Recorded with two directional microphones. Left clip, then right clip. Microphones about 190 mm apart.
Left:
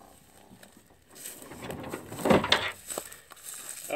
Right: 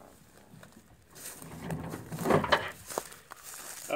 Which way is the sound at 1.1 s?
25° left (ahead or behind).